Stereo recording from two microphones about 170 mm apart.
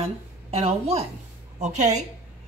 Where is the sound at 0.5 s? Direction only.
35° right (ahead or behind).